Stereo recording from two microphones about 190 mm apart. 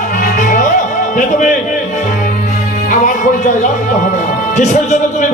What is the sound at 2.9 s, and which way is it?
Speech, 40° left (ahead or behind).